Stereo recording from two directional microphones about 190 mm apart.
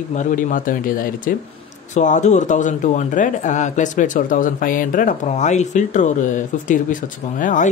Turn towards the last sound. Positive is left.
turn(degrees=40)  # may be behind; listen again after turning